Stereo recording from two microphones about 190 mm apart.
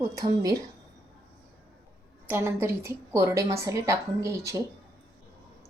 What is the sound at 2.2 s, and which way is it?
A woman's voice, 10° right (ahead or behind).